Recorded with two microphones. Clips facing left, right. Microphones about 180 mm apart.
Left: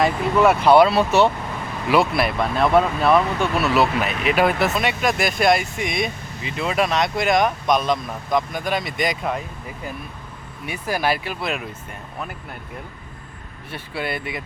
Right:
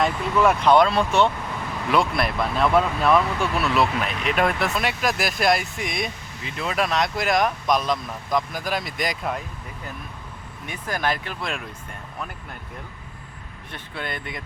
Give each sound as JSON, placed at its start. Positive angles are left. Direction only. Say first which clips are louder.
{"t": 0.0, "sound": "speech", "louder": "left 3 dB", "side_deg": 5}
{"t": 10.7, "sound": "speech", "louder": "left 4 dB", "side_deg": 10}
{"t": 13.7, "sound": "speech", "louder": "left 5 dB", "side_deg": 10}